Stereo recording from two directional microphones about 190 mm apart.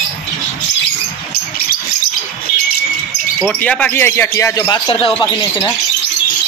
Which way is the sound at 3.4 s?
5° left (ahead or behind).